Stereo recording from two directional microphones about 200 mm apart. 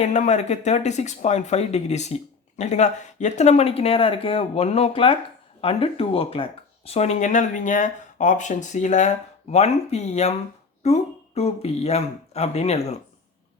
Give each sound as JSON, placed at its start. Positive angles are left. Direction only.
{"t": 0.0, "sound": "speech", "side_deg": 35}